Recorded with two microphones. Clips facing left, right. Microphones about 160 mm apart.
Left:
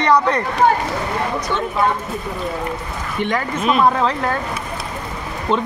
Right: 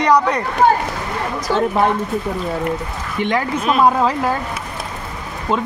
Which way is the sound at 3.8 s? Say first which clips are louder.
Right 4 dB; 10° right (ahead or behind).